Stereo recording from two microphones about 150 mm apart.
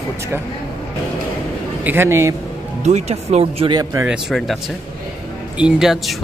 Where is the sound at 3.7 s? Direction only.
25° right (ahead or behind).